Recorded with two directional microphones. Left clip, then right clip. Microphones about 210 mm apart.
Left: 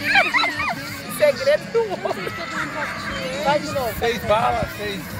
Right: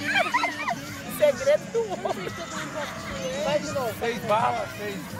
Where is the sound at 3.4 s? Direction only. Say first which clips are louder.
Left 6 dB; centre (ahead or behind).